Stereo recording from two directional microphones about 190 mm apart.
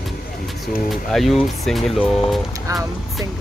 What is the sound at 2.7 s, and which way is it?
Speech, 20° right (ahead or behind).